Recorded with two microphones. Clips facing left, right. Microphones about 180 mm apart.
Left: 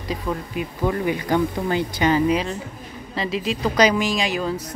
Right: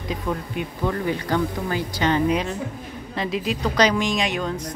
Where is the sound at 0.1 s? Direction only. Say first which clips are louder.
Left 1 dB; centre (ahead or behind).